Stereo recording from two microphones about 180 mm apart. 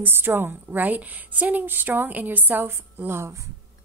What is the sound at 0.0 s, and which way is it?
A woman's voice, 10° right (ahead or behind).